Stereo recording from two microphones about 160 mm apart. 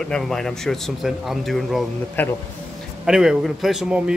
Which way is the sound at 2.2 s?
10° left (ahead or behind).